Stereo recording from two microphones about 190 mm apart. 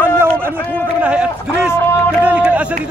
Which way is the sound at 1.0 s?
5° right (ahead or behind).